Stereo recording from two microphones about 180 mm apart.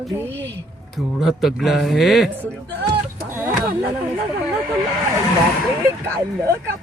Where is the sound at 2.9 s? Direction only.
20° right (ahead or behind).